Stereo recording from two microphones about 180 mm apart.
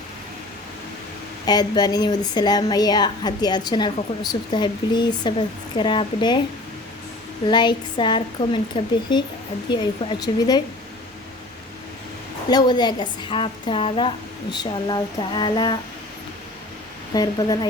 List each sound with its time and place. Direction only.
1.5 s a woman's voice: 20° left (ahead or behind)
7.4 s a woman's voice: 25° left (ahead or behind)
12.5 s a woman's voice: 20° left (ahead or behind)
17.2 s a woman's voice: 25° left (ahead or behind)